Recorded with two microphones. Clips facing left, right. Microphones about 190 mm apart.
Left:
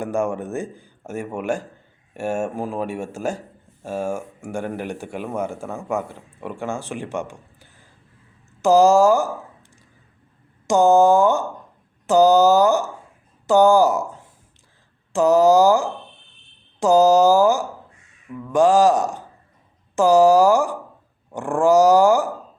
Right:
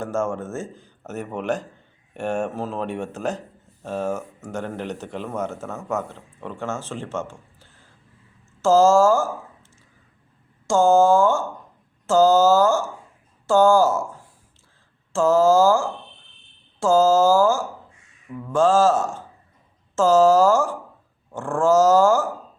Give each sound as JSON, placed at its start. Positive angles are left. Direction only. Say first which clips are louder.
{"t": 0.0, "sound": "speech", "louder": "left 2 dB", "side_deg": 15}
{"t": 10.7, "sound": "speech", "louder": "left 1 dB", "side_deg": 20}